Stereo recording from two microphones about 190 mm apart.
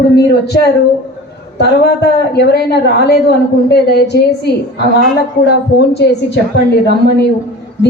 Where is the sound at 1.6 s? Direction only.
60° left (ahead or behind).